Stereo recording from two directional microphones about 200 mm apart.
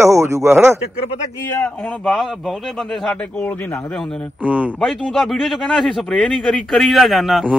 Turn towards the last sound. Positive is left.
turn(degrees=0)  # may be behind; listen again after turning